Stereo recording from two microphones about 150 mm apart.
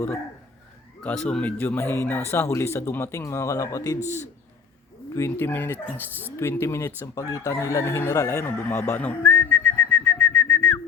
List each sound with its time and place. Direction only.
1.0 s speech: 5° left (ahead or behind); by 3.9 s 20° left (ahead or behind)
5.1 s speech: 15° left (ahead or behind)